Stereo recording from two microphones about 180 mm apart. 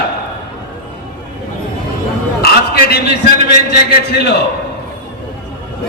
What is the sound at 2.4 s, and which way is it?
Speech, 60° left (ahead or behind).